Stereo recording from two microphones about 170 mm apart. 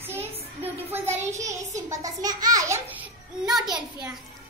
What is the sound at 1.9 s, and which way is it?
A child's voice, 20° right (ahead or behind).